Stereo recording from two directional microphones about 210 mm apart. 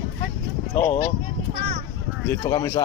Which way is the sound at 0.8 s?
40° left (ahead or behind).